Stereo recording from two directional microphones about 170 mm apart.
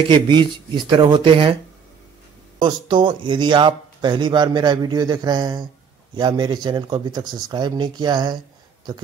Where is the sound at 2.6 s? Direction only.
25° right (ahead or behind).